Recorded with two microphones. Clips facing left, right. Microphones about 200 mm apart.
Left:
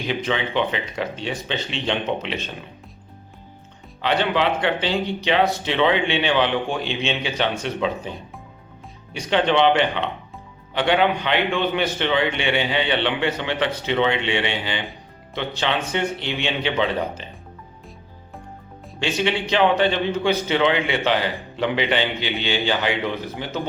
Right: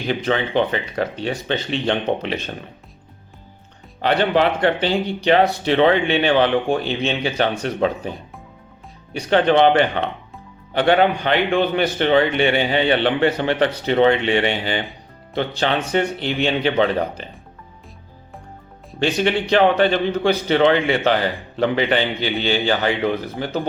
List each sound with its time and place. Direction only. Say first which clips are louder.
0.1 s a man's voice: right 4 dB; 40° right (ahead or behind)
4.0 s a man's voice: right 4 dB; 45° right (ahead or behind)
9.1 s a man's voice: right 4 dB; 45° right (ahead or behind)
18.9 s a man's voice: right 4 dB; 50° right (ahead or behind)